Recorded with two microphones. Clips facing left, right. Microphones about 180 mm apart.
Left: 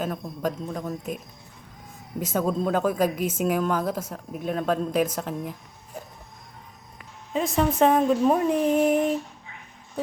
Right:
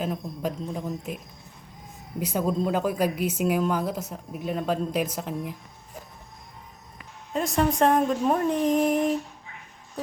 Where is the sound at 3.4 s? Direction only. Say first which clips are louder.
Even; 10° right (ahead or behind).